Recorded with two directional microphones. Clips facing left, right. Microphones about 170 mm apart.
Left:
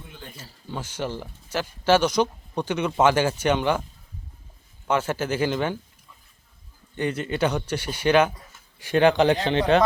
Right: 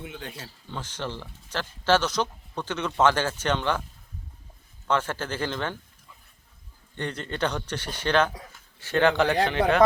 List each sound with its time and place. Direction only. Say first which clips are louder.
0.0 s speech: right 5 dB; 75° right (ahead or behind)
0.7 s speech: left 4 dB; 10° left (ahead or behind)
4.9 s speech: left 3 dB; 10° left (ahead or behind)
6.9 s a man's voice: left 6 dB; 10° left (ahead or behind); by 9.8 s 25° left (ahead or behind)